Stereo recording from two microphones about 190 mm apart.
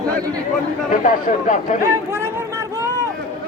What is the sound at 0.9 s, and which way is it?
Speech, 45° left (ahead or behind).